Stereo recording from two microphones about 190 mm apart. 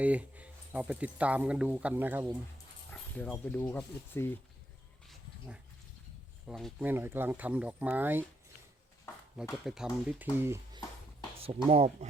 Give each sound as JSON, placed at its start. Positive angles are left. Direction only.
{"t": 0.0, "sound": "speech", "side_deg": -5}
{"t": 2.9, "sound": "speech", "side_deg": 5}
{"t": 6.5, "sound": "speech", "side_deg": 0}
{"t": 6.8, "sound": "speech", "side_deg": -10}
{"t": 9.6, "sound": "speech", "side_deg": -5}
{"t": 11.3, "sound": "speech", "side_deg": -30}